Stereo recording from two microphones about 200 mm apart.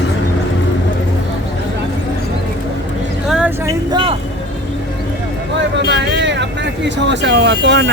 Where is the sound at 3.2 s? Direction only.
5° right (ahead or behind).